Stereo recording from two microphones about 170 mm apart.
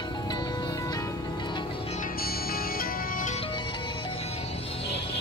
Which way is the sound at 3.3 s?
30° left (ahead or behind).